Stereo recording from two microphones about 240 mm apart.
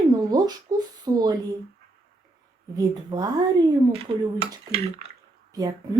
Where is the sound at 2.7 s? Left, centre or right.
Centre.